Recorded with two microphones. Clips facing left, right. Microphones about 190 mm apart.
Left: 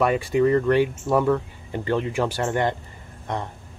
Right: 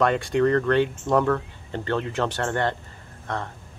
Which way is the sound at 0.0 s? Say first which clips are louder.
Left 1 dB; 5° left (ahead or behind).